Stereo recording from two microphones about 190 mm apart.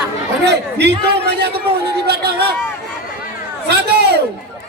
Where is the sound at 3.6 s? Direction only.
60° right (ahead or behind).